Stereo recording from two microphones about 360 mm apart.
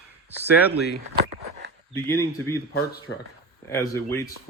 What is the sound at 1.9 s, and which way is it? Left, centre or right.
Speech, centre.